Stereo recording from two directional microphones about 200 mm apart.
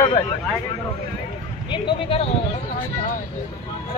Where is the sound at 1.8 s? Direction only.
30° left (ahead or behind).